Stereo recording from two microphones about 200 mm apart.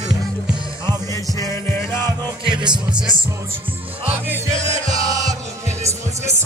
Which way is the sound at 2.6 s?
20° right (ahead or behind).